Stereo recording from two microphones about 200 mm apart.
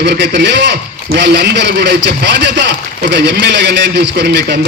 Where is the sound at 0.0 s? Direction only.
60° right (ahead or behind).